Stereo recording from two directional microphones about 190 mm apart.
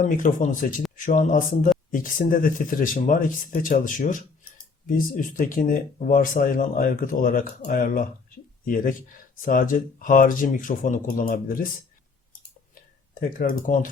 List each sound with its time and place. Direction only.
0.0 s speech: 40° left (ahead or behind)
13.1 s speech: 45° left (ahead or behind)